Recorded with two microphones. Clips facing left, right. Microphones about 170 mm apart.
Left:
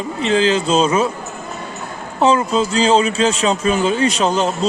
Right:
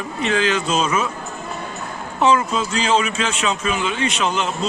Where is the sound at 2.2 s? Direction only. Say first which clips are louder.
Left 3 dB; 30° left (ahead or behind).